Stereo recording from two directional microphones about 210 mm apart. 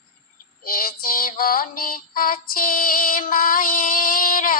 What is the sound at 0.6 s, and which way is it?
Music, 45° left (ahead or behind).